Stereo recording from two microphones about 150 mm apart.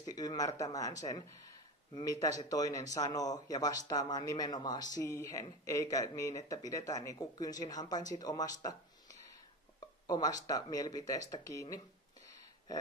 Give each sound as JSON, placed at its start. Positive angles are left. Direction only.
{"t": 0.0, "sound": "speech", "side_deg": 25}